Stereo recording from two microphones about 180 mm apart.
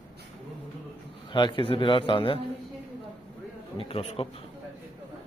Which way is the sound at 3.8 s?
30° left (ahead or behind).